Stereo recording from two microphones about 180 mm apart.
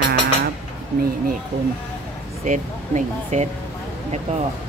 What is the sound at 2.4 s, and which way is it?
Speech, 40° right (ahead or behind).